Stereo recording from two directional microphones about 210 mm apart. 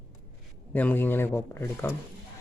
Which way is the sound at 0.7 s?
10° left (ahead or behind).